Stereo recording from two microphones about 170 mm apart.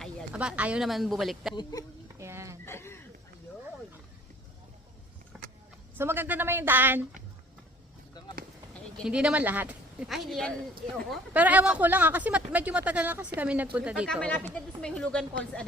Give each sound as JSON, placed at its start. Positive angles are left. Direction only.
{"t": 0.3, "sound": "a woman's voice", "side_deg": -5}
{"t": 2.1, "sound": "a sound", "side_deg": -15}
{"t": 2.6, "sound": "a sound", "side_deg": 15}
{"t": 5.3, "sound": "vehicle", "side_deg": 0}
{"t": 6.0, "sound": "speech", "side_deg": -15}
{"t": 9.0, "sound": "a woman's voice", "side_deg": -5}
{"t": 11.3, "sound": "a woman's voice", "side_deg": -10}
{"t": 14.2, "sound": "a woman's voice", "side_deg": 10}